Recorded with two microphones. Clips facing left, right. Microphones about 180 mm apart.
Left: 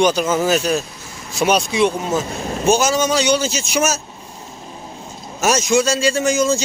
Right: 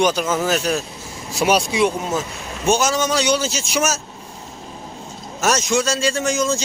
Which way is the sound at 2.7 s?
5° left (ahead or behind).